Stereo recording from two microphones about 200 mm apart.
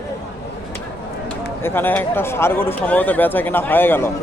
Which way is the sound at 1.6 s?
10° left (ahead or behind).